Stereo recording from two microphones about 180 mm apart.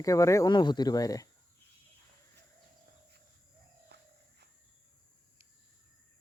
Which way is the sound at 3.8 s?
65° right (ahead or behind).